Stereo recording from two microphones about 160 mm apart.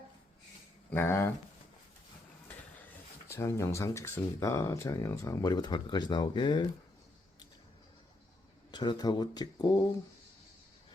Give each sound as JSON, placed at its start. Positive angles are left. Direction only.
{"t": 0.9, "sound": "speech", "side_deg": 15}
{"t": 3.2, "sound": "speech", "side_deg": 15}
{"t": 8.7, "sound": "speech", "side_deg": 25}